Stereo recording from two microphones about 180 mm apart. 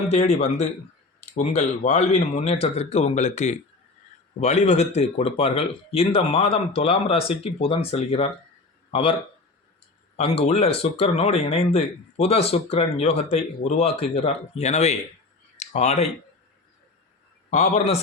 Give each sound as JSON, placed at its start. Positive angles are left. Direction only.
{"t": 0.1, "sound": "speech", "side_deg": 40}
{"t": 10.2, "sound": "speech", "side_deg": 35}
{"t": 15.5, "sound": "a sound", "side_deg": 40}
{"t": 17.5, "sound": "speech", "side_deg": 35}